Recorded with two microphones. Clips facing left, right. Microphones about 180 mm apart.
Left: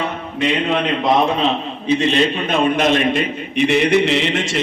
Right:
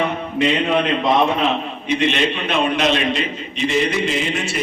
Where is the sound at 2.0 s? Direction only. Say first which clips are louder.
Even; 40° left (ahead or behind).